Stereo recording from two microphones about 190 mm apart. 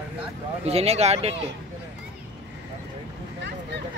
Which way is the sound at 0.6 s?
35° right (ahead or behind).